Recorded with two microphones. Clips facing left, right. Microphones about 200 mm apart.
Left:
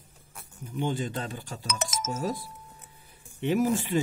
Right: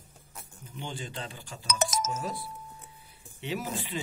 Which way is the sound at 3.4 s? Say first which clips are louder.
Left 9 dB; 50° left (ahead or behind).